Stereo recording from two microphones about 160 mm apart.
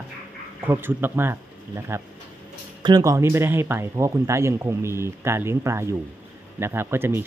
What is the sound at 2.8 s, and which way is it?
Speech, 25° right (ahead or behind).